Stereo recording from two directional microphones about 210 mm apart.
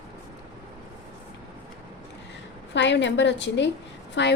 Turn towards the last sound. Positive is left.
turn(degrees=55)  # may be behind; listen again after turning